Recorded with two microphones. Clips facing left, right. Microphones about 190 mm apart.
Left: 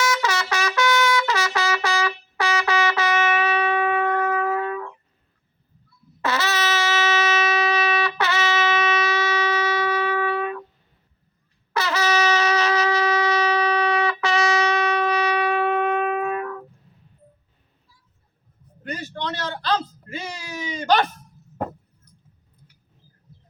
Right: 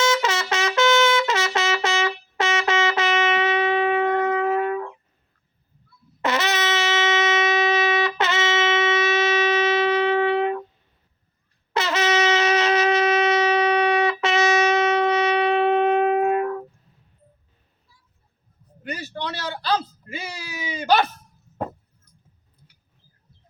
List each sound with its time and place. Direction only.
0.0 s trumpet: 20° right (ahead or behind)
6.2 s wind instrument: 20° right (ahead or behind)
11.7 s shofar: 20° right (ahead or behind)
18.8 s a sound: 10° right (ahead or behind)